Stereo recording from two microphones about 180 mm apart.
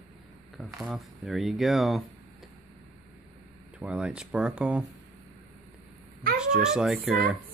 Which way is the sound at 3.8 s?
5° right (ahead or behind).